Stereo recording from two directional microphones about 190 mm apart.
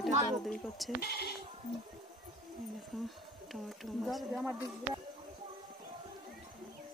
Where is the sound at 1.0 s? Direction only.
55° left (ahead or behind).